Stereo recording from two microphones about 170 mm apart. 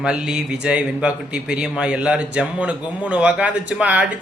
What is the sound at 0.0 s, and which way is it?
A man's voice, 5° right (ahead or behind).